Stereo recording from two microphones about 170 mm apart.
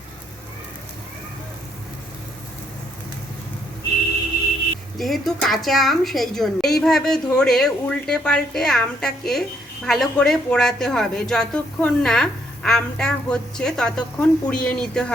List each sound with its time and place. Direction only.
4.9 s a woman's voice: centre (ahead or behind)